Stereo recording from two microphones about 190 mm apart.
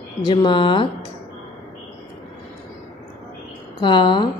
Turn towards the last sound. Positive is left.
turn(degrees=25)  # may be behind; listen again after turning